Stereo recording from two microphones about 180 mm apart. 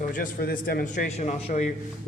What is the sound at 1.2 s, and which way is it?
Speech, 40° left (ahead or behind).